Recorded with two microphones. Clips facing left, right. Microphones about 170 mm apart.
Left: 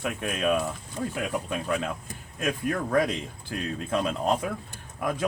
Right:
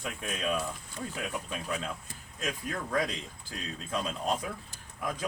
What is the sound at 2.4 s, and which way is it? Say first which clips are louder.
Speech: left 8 dB; 60° left (ahead or behind).